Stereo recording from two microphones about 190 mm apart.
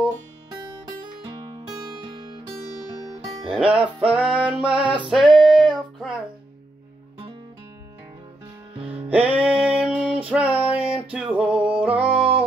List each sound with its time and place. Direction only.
1.2 s music: 25° right (ahead or behind)
3.5 s music: 5° right (ahead or behind)
4.7 s music: 25° right (ahead or behind)
5.0 s music: centre (ahead or behind)
9.1 s music: 10° right (ahead or behind)